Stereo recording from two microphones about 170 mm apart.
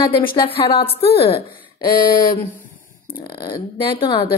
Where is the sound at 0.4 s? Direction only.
30° left (ahead or behind).